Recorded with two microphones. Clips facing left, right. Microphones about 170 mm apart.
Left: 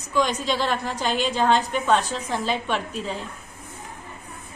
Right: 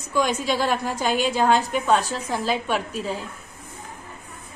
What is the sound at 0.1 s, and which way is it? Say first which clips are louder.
A woman's voice: right 1 dB; 10° right (ahead or behind).